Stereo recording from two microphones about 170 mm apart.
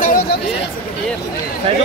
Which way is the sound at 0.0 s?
55° left (ahead or behind).